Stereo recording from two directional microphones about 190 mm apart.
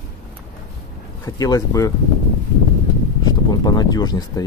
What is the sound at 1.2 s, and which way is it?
Speech, 15° left (ahead or behind).